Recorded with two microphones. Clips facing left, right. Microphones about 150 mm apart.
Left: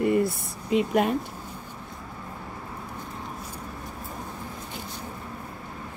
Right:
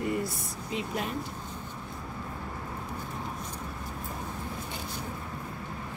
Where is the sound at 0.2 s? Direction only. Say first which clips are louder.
Left 7 dB; 60° left (ahead or behind).